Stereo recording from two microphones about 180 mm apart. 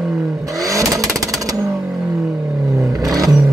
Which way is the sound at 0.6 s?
20° right (ahead or behind).